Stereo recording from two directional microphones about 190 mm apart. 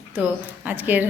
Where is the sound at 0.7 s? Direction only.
10° right (ahead or behind).